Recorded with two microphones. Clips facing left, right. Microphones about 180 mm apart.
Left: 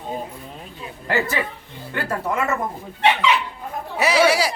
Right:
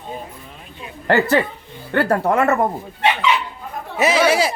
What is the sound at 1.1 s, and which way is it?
A woman's voice, 65° right (ahead or behind).